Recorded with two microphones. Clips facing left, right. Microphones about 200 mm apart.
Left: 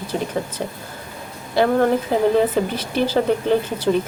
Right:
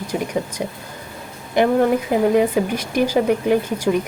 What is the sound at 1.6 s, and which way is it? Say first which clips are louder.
Speech: right 1 dB; 20° right (ahead or behind).